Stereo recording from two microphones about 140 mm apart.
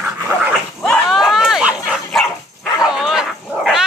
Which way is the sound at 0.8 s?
Centre (ahead or behind).